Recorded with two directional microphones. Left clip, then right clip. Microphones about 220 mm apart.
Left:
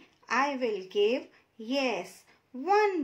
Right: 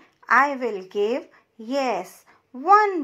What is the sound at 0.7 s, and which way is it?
Child singing, 15° right (ahead or behind).